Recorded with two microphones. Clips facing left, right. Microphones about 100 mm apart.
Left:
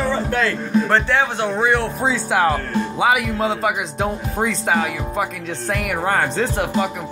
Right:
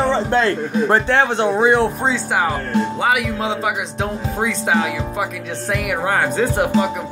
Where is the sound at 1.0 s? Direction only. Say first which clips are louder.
Right 3 dB; 50° right (ahead or behind).